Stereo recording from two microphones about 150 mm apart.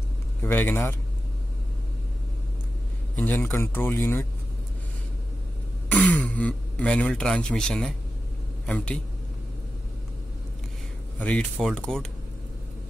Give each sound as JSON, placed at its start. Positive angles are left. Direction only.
{"t": 0.4, "sound": "speech", "side_deg": 15}
{"t": 3.2, "sound": "speech", "side_deg": 15}
{"t": 5.9, "sound": "speech", "side_deg": 10}
{"t": 11.1, "sound": "speech", "side_deg": 10}